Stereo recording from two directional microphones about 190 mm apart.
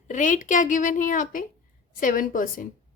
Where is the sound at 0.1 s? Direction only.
45° left (ahead or behind).